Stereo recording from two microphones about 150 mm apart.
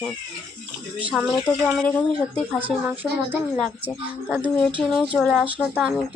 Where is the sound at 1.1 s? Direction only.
Centre (ahead or behind).